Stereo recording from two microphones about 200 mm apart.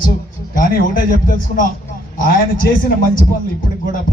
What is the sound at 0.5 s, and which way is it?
A man's voice, 45° left (ahead or behind).